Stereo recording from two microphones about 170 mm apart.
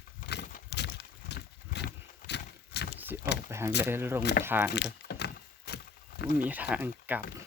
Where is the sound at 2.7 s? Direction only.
80° left.